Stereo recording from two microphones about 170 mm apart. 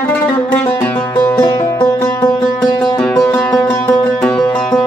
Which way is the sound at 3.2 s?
5° left (ahead or behind).